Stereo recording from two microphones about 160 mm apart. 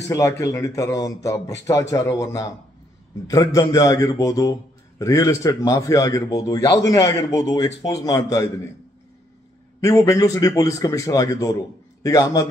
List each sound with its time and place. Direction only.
0.1 s a man's voice: 20° left (ahead or behind)
9.8 s a man's voice: 20° left (ahead or behind)